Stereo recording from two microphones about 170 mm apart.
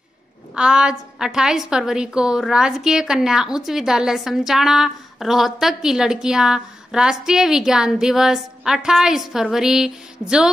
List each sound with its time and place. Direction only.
0.6 s a woman's voice: 5° right (ahead or behind)